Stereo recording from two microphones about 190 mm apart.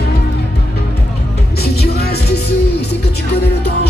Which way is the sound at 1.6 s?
55° left (ahead or behind).